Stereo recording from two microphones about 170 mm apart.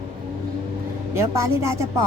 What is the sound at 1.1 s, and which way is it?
Music, 15° right (ahead or behind).